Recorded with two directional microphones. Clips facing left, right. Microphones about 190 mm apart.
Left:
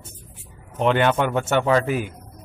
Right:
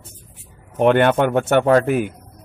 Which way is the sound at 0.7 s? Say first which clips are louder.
Right 5 dB; 55° right (ahead or behind).